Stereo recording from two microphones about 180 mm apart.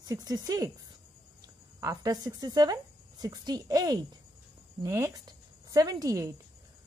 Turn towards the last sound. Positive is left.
turn(degrees=-20)  # may be behind; listen again after turning